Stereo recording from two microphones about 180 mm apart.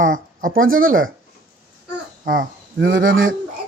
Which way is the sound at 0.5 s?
90° right.